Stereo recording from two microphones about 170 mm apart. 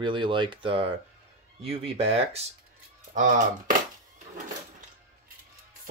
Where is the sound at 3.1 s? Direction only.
50° right (ahead or behind).